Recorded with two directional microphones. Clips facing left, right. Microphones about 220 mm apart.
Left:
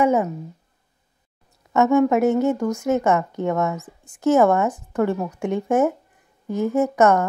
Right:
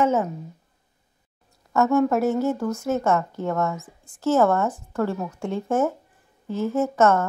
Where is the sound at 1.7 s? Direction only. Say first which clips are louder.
Left 3 dB; 20° left (ahead or behind).